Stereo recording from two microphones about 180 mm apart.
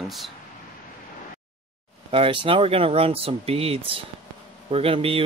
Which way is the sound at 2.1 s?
30° right (ahead or behind).